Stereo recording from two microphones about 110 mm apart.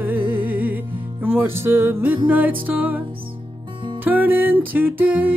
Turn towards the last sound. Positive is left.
turn(degrees=-15)  # may be behind; listen again after turning